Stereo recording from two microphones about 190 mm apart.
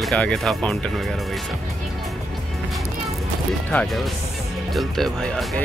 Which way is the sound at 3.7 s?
5° left (ahead or behind).